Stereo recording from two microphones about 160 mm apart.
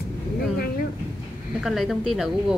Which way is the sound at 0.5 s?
65° left (ahead or behind).